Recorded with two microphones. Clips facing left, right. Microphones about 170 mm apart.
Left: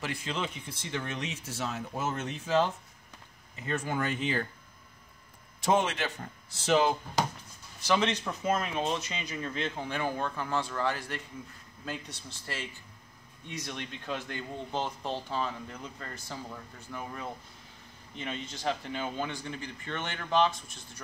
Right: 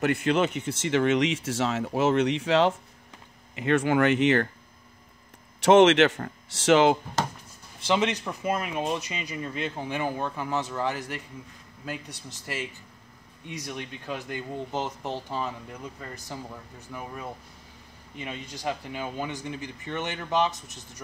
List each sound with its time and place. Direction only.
0.0 s speech: 65° right (ahead or behind)
5.6 s speech: 80° right
7.8 s speech: 20° right (ahead or behind)